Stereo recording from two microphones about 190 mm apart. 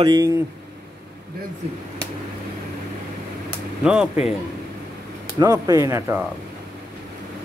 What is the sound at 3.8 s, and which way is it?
Speech, 5° right (ahead or behind).